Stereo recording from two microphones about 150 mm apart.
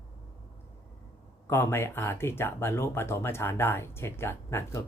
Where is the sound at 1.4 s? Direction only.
15° left (ahead or behind).